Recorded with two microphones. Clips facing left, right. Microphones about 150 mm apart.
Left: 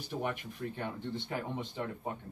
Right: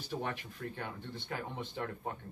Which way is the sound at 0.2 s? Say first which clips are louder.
Left 3 dB; 15° left (ahead or behind).